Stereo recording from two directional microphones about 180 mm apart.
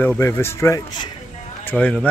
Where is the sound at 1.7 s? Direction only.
5° left (ahead or behind).